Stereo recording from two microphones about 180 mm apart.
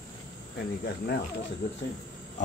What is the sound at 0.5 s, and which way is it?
Speech, 65° left (ahead or behind).